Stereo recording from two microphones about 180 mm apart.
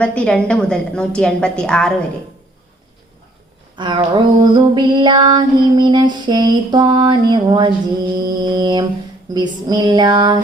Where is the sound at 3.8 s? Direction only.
25° right (ahead or behind).